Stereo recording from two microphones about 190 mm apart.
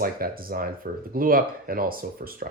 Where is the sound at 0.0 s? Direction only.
50° right (ahead or behind).